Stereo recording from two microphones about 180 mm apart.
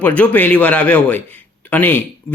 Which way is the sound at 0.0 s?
10° left (ahead or behind).